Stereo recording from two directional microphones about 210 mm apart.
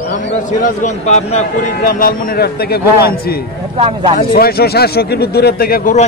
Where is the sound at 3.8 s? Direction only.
25° right (ahead or behind).